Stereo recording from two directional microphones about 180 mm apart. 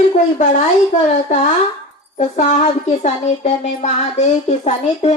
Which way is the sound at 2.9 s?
40° left (ahead or behind).